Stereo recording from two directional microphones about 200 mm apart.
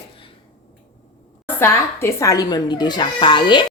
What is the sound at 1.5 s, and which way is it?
Speech, 10° left (ahead or behind).